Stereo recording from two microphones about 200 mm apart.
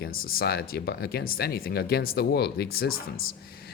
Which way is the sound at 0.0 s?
50° left (ahead or behind).